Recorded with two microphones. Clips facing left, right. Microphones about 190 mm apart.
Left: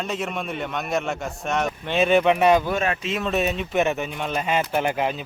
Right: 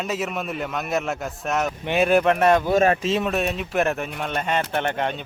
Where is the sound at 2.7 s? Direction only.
40° right (ahead or behind).